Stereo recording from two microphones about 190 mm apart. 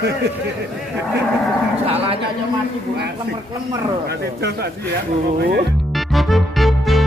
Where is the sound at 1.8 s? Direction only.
30° right (ahead or behind).